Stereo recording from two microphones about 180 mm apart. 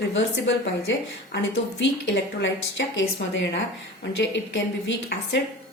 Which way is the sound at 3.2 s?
75° left (ahead or behind).